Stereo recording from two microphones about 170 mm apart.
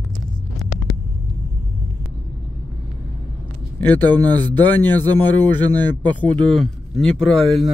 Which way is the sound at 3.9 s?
25° right (ahead or behind).